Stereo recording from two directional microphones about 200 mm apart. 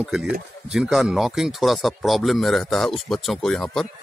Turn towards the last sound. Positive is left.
turn(degrees=0)  # may be behind; listen again after turning